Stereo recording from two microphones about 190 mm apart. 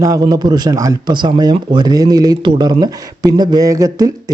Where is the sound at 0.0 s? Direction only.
20° right (ahead or behind).